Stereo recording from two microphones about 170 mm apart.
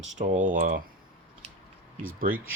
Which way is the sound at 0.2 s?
50° right (ahead or behind).